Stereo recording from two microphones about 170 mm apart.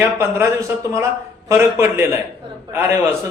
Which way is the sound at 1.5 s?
15° right (ahead or behind).